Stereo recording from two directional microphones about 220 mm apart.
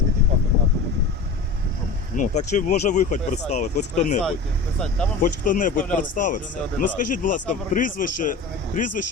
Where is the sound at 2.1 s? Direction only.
35° left (ahead or behind).